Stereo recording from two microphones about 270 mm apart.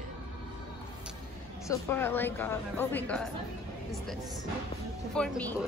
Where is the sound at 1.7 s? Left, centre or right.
Centre.